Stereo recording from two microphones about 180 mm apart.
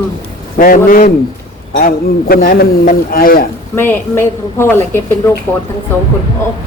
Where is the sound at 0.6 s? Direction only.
50° left (ahead or behind).